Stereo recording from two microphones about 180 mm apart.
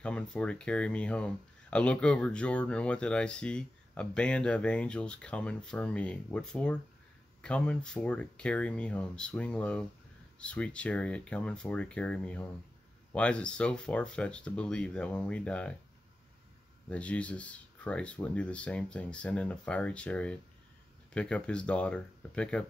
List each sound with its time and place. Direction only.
0.0 s speech: 5° left (ahead or behind)
16.9 s speech: 5° left (ahead or behind)